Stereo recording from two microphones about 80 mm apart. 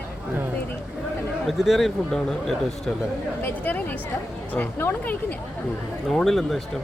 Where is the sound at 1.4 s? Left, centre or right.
Centre.